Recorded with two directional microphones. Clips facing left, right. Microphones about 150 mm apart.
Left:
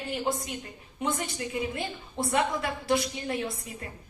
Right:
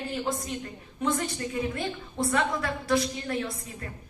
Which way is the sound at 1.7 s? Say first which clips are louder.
Right 2 dB; 25° left (ahead or behind).